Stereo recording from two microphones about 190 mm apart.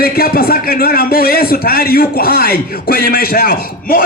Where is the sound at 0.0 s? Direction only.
50° left (ahead or behind).